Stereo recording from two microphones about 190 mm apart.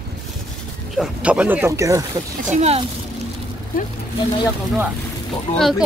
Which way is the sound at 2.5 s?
35° right (ahead or behind).